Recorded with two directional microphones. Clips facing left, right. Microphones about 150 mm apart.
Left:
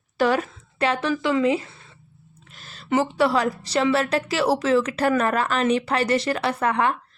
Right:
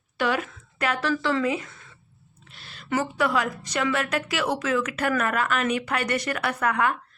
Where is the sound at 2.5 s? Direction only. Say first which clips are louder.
Left 1 dB; 40° left (ahead or behind).